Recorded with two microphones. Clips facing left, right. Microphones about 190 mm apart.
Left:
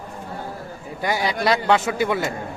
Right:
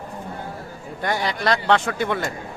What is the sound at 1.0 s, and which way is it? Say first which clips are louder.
A man's voice: left 2 dB; 5° left (ahead or behind).